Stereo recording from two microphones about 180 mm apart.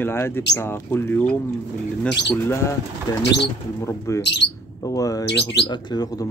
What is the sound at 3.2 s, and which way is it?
Speech, 70° left (ahead or behind).